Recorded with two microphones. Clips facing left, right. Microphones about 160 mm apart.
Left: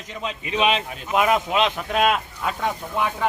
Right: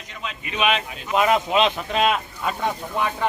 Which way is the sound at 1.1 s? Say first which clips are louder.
Right 1 dB; centre (ahead or behind).